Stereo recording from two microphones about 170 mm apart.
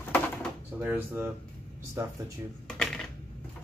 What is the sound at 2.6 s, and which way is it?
Coin, 5° left (ahead or behind).